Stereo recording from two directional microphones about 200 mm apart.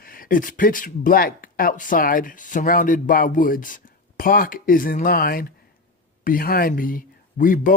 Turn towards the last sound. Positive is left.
turn(degrees=40)  # may be behind; listen again after turning